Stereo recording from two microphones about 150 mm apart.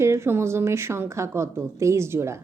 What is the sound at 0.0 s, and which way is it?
A woman's voice, 20° right (ahead or behind).